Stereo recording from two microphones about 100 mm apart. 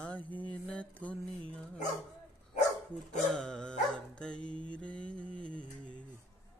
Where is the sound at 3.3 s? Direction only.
5° left (ahead or behind).